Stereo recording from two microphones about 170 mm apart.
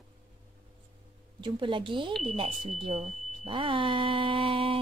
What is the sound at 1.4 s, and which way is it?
A woman's voice, 30° right (ahead or behind).